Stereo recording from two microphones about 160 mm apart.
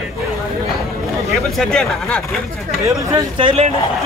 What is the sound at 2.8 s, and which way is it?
Speech, 20° right (ahead or behind).